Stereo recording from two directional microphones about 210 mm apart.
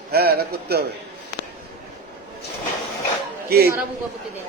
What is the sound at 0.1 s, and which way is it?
Speech, 50° right (ahead or behind).